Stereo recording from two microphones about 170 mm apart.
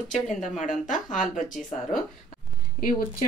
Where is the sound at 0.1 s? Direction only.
45° left (ahead or behind).